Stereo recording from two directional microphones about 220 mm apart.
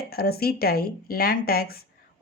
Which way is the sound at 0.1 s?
45° left (ahead or behind).